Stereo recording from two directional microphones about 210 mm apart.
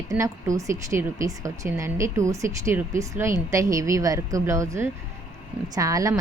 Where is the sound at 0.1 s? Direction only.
15° right (ahead or behind).